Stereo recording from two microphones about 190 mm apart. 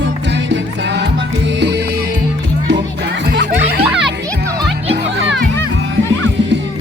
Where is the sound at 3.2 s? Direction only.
60° right (ahead or behind).